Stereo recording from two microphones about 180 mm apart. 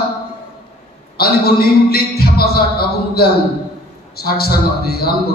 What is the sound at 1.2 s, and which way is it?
A man's voice, 60° left (ahead or behind).